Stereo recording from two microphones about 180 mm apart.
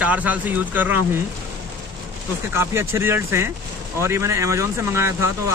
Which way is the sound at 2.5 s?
15° right (ahead or behind).